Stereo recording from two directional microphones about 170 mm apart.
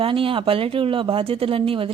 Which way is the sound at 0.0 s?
30° right (ahead or behind).